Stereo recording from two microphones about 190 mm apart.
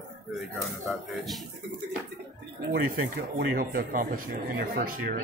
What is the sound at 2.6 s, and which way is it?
Speech, 55° right (ahead or behind).